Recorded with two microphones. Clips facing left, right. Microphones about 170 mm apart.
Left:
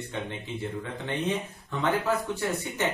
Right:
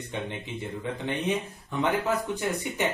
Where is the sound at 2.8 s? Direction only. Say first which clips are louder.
Right 1 dB; 15° right (ahead or behind).